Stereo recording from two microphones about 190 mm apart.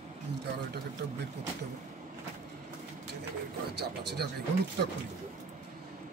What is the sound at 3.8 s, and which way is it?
Speech, 60° right (ahead or behind).